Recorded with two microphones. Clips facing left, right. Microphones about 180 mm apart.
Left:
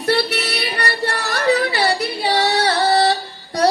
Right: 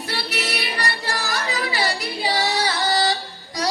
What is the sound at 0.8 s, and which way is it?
Yodeling, 65° left (ahead or behind).